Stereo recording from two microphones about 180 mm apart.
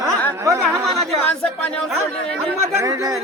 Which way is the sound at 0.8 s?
Centre (ahead or behind).